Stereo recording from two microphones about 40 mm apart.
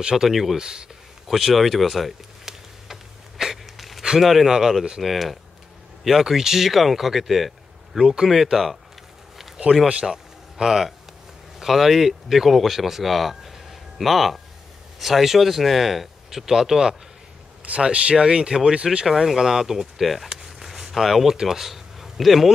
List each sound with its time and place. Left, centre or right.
0.0 s speech: centre
0.6 s speech: centre
1.2 s speech: centre
2.4 s a sound: centre
4.2 s speech: centre
4.5 s speech: centre
5.0 s speech: centre
10.0 s a sound: centre
11.6 s speech: centre
17.6 s speech: right
19.0 s speech: centre
20.2 s a sound: centre
21.4 s speech: centre